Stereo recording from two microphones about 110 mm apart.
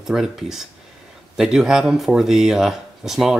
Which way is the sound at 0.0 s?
5° right (ahead or behind).